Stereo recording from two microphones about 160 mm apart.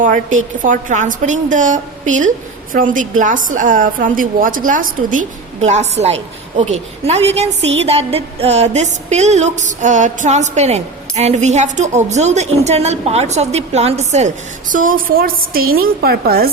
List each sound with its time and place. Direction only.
0.0 s a woman's voice: 55° right (ahead or behind)
5.6 s a woman's voice: 45° right (ahead or behind); by 16.5 s 70° right (ahead or behind)